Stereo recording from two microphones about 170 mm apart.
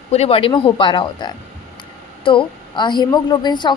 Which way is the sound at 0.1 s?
35° left (ahead or behind).